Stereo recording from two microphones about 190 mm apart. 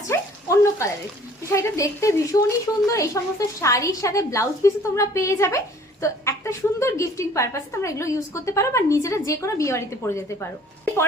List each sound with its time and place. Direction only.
0.1 s frying: 15° left (ahead or behind)
1.5 s a woman's voice: 15° left (ahead or behind)